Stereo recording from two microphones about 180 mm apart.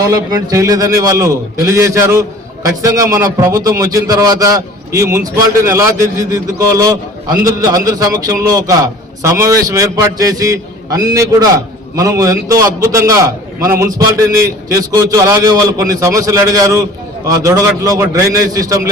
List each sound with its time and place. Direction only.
0.0 s a man's voice: 20° right (ahead or behind)